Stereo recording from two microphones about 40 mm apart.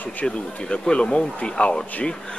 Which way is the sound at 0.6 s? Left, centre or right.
Left.